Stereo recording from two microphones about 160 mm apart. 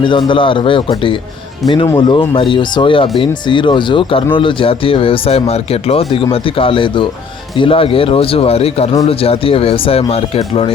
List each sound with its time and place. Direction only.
0.0 s speech: 30° left (ahead or behind)